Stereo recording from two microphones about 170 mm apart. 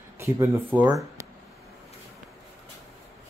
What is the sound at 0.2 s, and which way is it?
Speech, 15° right (ahead or behind).